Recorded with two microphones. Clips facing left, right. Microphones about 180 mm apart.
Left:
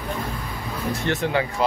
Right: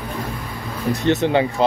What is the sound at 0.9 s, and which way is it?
Speech, 20° right (ahead or behind).